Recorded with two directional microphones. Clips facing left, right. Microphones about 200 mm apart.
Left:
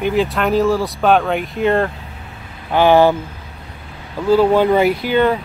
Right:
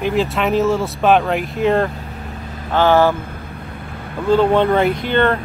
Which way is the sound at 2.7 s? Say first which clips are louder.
Left 2 dB; 15° left (ahead or behind).